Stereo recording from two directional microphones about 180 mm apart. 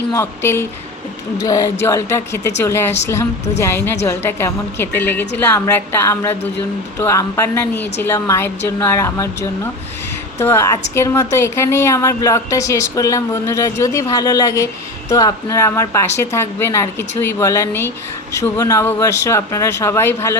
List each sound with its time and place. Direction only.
0.1 s a woman's voice: 15° left (ahead or behind)